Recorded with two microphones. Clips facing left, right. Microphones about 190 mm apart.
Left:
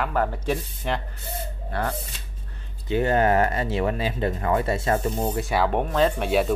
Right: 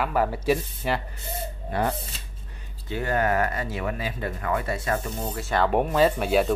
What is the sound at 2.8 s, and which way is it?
Speech, 20° left (ahead or behind).